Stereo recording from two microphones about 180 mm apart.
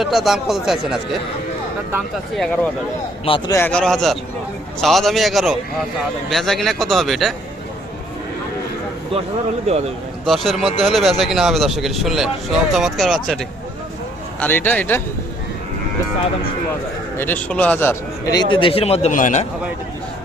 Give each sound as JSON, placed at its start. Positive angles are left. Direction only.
{"t": 0.0, "sound": "speech", "side_deg": 0}
{"t": 2.3, "sound": "speech", "side_deg": 0}
{"t": 3.2, "sound": "speech", "side_deg": 30}
{"t": 3.5, "sound": "speech", "side_deg": 10}
{"t": 9.6, "sound": "a man's voice", "side_deg": -35}
{"t": 10.2, "sound": "a man's voice", "side_deg": 0}
{"t": 17.2, "sound": "a man's voice", "side_deg": 10}
{"t": 18.3, "sound": "a man's voice", "side_deg": 30}